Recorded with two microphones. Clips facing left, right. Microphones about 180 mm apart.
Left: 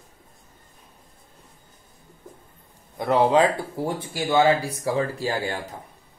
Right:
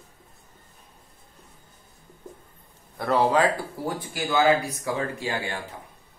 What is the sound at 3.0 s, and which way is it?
Speech, 20° left (ahead or behind).